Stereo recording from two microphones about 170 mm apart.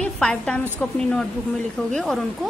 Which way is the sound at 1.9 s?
Centre (ahead or behind).